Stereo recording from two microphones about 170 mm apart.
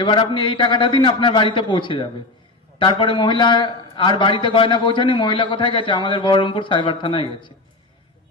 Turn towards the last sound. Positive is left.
turn(degrees=30)  # may be behind; listen again after turning